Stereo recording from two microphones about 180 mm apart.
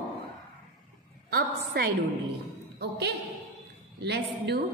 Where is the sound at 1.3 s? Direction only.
60° right (ahead or behind).